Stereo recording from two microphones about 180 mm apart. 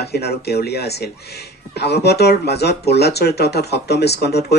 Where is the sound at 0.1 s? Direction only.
65° left (ahead or behind).